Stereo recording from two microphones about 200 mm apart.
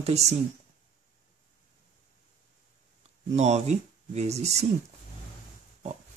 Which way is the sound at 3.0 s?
35° right (ahead or behind).